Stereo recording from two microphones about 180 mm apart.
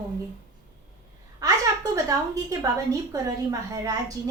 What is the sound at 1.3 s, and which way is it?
A woman's voice, 20° right (ahead or behind).